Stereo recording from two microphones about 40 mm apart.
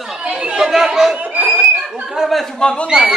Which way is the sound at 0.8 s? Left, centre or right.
Centre.